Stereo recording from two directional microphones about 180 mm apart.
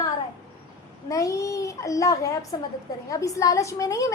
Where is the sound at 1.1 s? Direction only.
15° left (ahead or behind).